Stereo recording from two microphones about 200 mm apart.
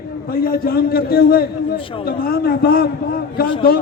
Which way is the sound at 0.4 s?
45° left (ahead or behind).